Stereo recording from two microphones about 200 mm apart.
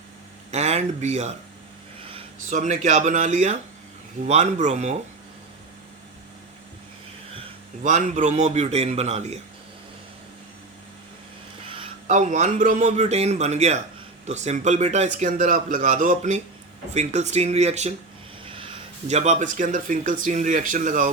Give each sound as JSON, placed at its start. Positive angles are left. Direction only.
{"t": 0.5, "sound": "speech", "side_deg": -35}
{"t": 7.9, "sound": "speech", "side_deg": -40}
{"t": 11.6, "sound": "speech", "side_deg": -25}